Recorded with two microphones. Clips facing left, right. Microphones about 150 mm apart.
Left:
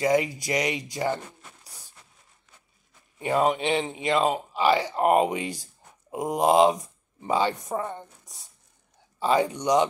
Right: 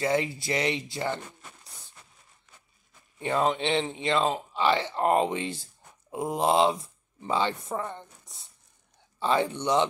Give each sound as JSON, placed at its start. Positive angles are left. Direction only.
{"t": 0.0, "sound": "speech", "side_deg": 15}
{"t": 3.2, "sound": "speech", "side_deg": 15}